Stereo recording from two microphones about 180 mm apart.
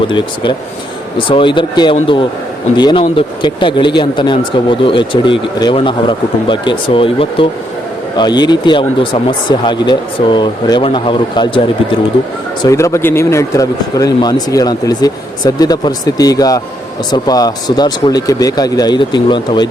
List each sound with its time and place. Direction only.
0.1 s speech: 25° left (ahead or behind)
12.6 s speech: 15° left (ahead or behind)